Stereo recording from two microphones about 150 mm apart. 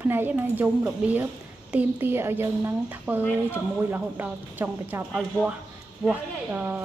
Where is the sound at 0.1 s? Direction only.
15° right (ahead or behind).